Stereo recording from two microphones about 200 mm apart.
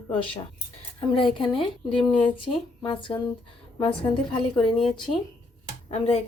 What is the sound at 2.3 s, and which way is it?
Speech, 25° left (ahead or behind).